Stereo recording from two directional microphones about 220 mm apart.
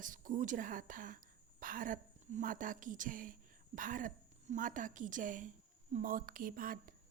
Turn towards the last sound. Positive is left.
turn(degrees=-40)  # may be behind; listen again after turning